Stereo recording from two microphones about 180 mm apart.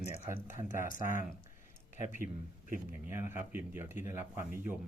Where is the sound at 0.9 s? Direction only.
45° left (ahead or behind).